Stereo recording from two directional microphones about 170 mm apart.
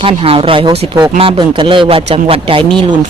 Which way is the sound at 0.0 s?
35° right (ahead or behind).